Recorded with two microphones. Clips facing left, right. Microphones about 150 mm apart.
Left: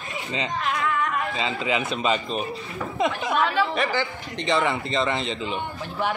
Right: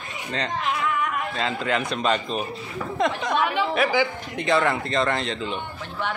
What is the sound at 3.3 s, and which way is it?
A man's voice, 20° right (ahead or behind).